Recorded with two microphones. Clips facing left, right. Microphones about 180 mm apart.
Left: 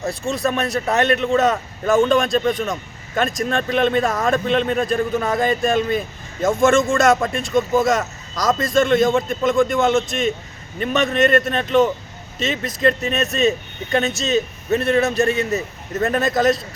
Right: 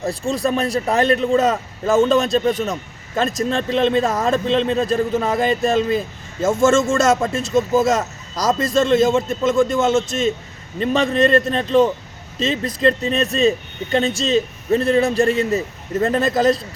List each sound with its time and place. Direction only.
0.1 s a man's voice: 30° right (ahead or behind)